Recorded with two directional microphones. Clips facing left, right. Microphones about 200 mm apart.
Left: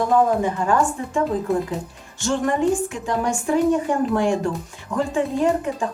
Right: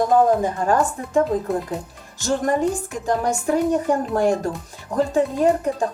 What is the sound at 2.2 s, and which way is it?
A woman's voice, 40° right (ahead or behind).